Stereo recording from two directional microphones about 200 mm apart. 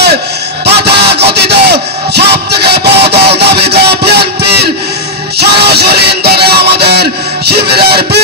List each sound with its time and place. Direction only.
0.7 s music: 55° right (ahead or behind)
3.1 s a sound: 55° right (ahead or behind)
5.5 s music: 55° right (ahead or behind)